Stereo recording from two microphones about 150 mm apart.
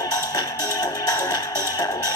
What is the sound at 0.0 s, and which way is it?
Music, 25° left (ahead or behind).